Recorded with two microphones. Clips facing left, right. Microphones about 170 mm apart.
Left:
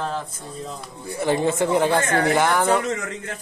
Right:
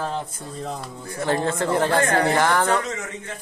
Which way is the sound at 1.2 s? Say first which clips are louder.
Left 2 dB; 10° left (ahead or behind).